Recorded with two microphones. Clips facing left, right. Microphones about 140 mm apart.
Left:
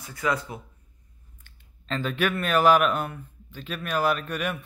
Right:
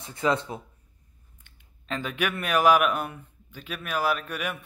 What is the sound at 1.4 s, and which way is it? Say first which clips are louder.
Speech: left 1 dB; 15° right (ahead or behind).